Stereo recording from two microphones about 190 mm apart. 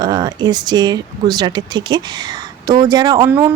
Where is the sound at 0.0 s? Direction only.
20° right (ahead or behind).